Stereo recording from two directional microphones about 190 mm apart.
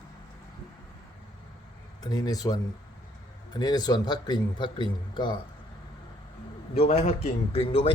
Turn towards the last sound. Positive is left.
turn(degrees=30)  # may be behind; listen again after turning